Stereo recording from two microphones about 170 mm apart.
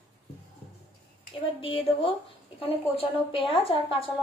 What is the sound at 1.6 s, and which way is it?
A woman's voice, 35° left (ahead or behind).